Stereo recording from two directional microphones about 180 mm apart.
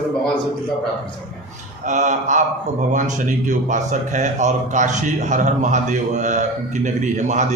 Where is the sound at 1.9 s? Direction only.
40° right (ahead or behind).